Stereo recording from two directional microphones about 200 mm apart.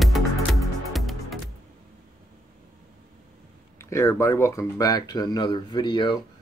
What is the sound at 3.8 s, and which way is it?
Speech, 15° left (ahead or behind).